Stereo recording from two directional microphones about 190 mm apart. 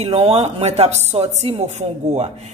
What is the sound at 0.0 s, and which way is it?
Speech, 30° right (ahead or behind).